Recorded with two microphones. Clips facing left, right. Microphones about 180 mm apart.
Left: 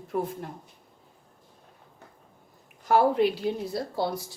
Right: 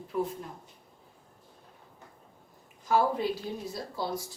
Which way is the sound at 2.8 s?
70° left (ahead or behind).